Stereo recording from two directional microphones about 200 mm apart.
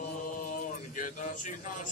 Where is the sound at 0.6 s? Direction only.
40° left (ahead or behind).